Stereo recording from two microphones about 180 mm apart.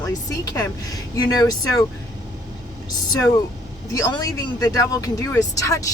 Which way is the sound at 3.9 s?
20° left (ahead or behind).